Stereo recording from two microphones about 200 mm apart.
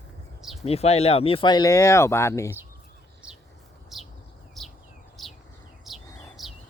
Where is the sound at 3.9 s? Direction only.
Centre (ahead or behind).